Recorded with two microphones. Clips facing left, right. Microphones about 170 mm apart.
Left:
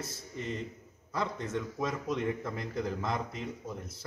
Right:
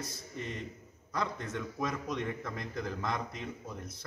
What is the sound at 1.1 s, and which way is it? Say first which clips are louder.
A man's voice: left 2 dB; centre (ahead or behind).